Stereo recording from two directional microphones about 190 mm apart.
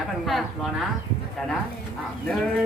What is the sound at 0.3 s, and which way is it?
Speech, centre (ahead or behind).